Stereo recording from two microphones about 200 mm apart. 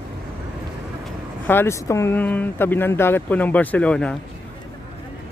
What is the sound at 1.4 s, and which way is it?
Speech, 10° left (ahead or behind).